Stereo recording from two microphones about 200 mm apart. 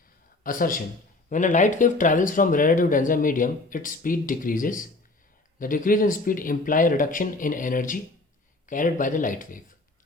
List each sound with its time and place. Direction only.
0.4 s speech: 45° left (ahead or behind)